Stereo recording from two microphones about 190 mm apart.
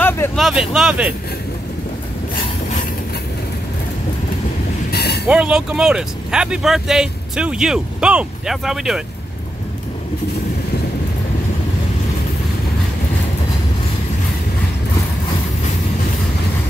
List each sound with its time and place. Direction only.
0.4 s speech: centre (ahead or behind)
4.9 s vehicle: 60° left (ahead or behind)
5.3 s speech: 5° right (ahead or behind)